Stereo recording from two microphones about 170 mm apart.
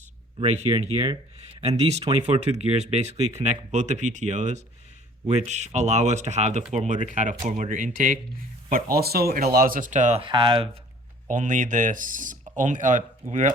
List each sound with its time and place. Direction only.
0.3 s speech: 40° right (ahead or behind)
8.7 s speech: 65° right (ahead or behind); by 10.2 s 45° right (ahead or behind)
10.2 s speech: 30° right (ahead or behind)
11.3 s speech: 50° right (ahead or behind)